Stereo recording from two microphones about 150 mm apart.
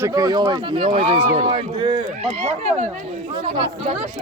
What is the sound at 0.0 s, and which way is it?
Speech, 25° right (ahead or behind).